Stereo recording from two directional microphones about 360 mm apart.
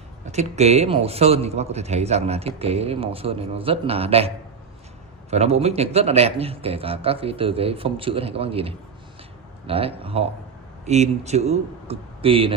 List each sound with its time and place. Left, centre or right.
0.3 s a man's voice: centre
5.3 s a man's voice: centre